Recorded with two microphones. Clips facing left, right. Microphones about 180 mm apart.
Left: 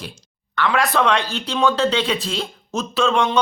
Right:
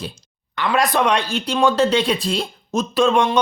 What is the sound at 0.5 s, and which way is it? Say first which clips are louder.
Speech: right 1 dB; 15° right (ahead or behind).